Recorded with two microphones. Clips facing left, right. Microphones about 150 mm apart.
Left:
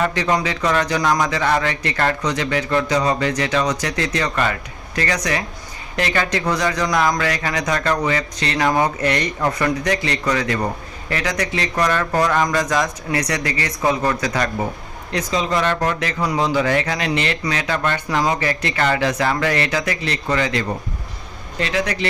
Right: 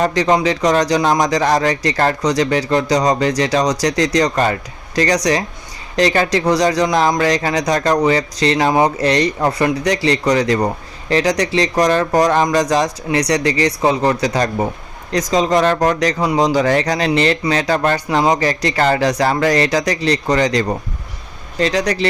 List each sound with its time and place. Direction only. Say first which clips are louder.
0.0 s speech: right 5 dB; 35° right (ahead or behind)